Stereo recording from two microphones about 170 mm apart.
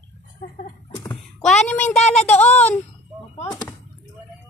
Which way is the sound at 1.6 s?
10° left (ahead or behind).